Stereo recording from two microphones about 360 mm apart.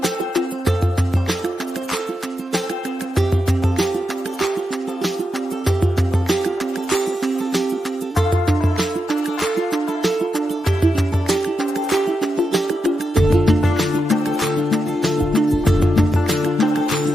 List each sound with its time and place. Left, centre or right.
0.0 s music: centre
5.8 s music: centre
9.4 s music: centre
11.9 s music: centre